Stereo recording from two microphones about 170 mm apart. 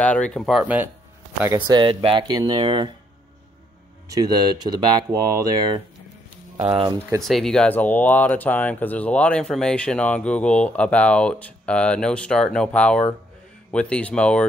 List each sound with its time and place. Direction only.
0.0 s speech: 5° left (ahead or behind)
1.4 s speech: 20° right (ahead or behind)
4.1 s speech: 25° right (ahead or behind)
7.2 s speech: centre (ahead or behind)